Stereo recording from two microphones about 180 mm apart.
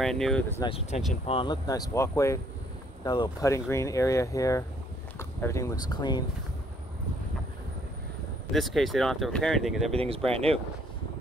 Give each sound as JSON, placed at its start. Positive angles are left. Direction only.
{"t": 0.0, "sound": "speech", "side_deg": 5}
{"t": 0.6, "sound": "speech", "side_deg": 30}
{"t": 8.5, "sound": "speech", "side_deg": 0}
{"t": 9.9, "sound": "speech", "side_deg": -30}